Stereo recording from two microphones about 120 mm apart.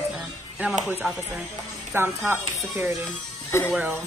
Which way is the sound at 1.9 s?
20° right (ahead or behind).